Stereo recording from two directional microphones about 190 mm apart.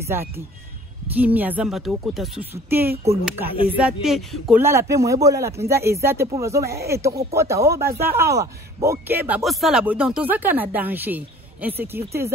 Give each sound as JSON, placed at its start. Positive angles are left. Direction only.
{"t": 0.1, "sound": "speech", "side_deg": -10}
{"t": 4.6, "sound": "speech", "side_deg": -15}